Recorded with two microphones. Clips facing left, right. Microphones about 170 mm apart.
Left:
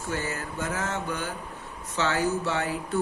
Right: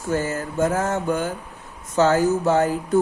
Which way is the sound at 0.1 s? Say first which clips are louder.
Right 8 dB; 45° right (ahead or behind).